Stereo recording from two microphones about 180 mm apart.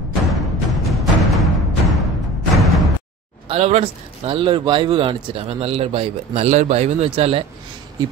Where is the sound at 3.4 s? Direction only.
35° right (ahead or behind).